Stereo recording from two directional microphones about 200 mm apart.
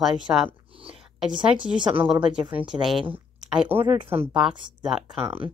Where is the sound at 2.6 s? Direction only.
Centre (ahead or behind).